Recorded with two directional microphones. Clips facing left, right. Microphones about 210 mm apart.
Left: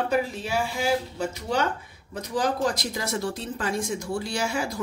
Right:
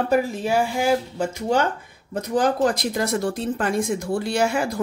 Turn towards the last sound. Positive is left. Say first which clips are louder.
# right 6 dB
turn(degrees=-55)  # may be behind; listen again after turning